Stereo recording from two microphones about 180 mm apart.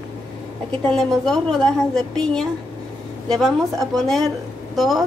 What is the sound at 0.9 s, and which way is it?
A woman's voice, centre (ahead or behind).